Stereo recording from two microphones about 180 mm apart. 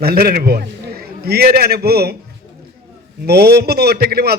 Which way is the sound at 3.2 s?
60° right (ahead or behind).